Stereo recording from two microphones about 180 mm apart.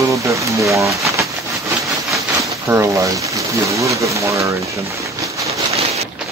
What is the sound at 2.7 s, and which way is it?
Speech, 15° right (ahead or behind).